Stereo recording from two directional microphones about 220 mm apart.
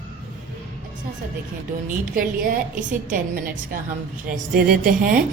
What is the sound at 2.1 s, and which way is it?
A woman's voice, 40° right (ahead or behind).